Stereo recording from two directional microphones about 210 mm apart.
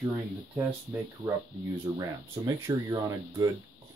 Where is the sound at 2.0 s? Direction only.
15° right (ahead or behind).